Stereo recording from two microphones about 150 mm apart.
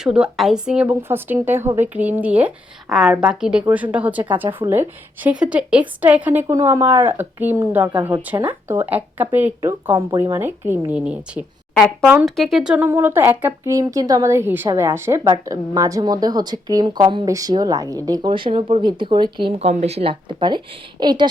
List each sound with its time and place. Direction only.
0.0 s a woman's voice: 5° right (ahead or behind)
6.5 s speech: 20° right (ahead or behind)
13.7 s a woman's voice: 25° right (ahead or behind)
18.3 s a woman's voice: 35° right (ahead or behind)